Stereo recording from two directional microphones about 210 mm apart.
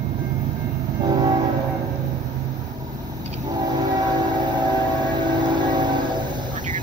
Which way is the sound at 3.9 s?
20° right (ahead or behind).